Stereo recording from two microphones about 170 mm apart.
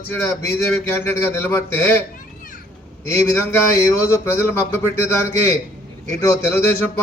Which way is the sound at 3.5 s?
15° left (ahead or behind).